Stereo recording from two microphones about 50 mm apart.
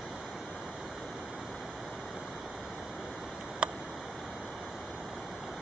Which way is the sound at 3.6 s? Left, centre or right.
Centre.